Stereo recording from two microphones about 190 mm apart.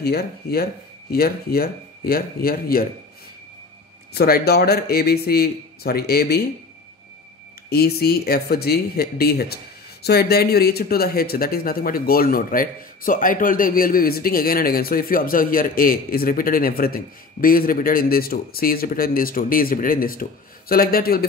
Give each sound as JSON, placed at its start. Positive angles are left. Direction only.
{"t": 0.0, "sound": "speech", "side_deg": 55}
{"t": 4.1, "sound": "a man's voice", "side_deg": 55}
{"t": 7.7, "sound": "speech", "side_deg": 55}